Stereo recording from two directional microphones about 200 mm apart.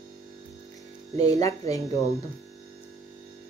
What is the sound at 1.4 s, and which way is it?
Speech, 15° left (ahead or behind).